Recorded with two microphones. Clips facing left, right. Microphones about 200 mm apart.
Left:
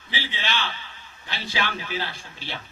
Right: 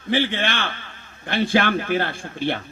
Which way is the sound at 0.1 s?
55° right (ahead or behind).